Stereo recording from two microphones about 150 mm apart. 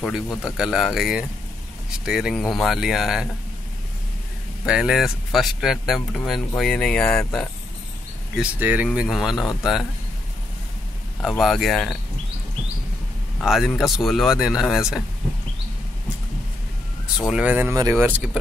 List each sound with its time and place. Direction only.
0.0 s speech: centre (ahead or behind)
4.6 s speech: 5° right (ahead or behind)
8.4 s speech: 10° right (ahead or behind)
11.1 s speech: centre (ahead or behind)
13.4 s a man's voice: centre (ahead or behind)
17.3 s speech: 10° right (ahead or behind)
17.7 s speech: 25° right (ahead or behind)
18.0 s speech: 5° right (ahead or behind)